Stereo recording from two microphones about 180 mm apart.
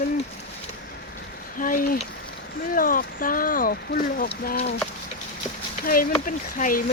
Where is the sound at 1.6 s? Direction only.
50° left (ahead or behind).